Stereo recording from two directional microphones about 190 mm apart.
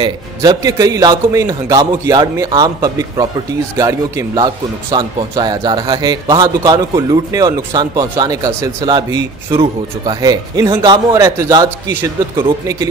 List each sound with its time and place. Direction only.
0.0 s a man's voice: 20° right (ahead or behind)